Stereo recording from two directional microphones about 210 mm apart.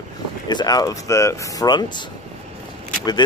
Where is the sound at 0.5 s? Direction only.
20° left (ahead or behind).